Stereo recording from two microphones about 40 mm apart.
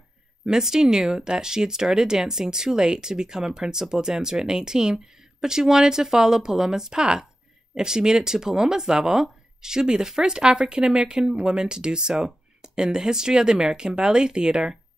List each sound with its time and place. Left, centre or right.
0.5 s speech: centre